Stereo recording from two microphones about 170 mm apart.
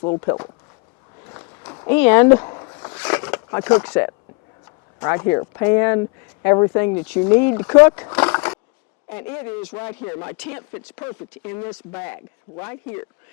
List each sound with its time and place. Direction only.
0.0 s speech: 30° left (ahead or behind)
1.3 s a sound: 25° left (ahead or behind)
1.9 s a man's voice: 10° left (ahead or behind)
2.4 s vehicle: 25° left (ahead or behind)
3.0 s a man's voice: 10° left (ahead or behind)